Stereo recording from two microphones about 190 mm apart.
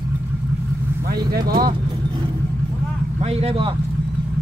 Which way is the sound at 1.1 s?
55° right (ahead or behind).